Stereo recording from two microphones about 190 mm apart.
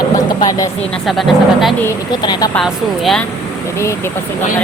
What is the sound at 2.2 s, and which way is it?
Speech, 20° left (ahead or behind).